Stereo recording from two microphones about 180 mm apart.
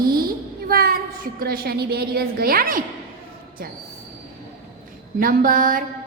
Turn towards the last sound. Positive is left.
turn(degrees=-50)  # may be behind; listen again after turning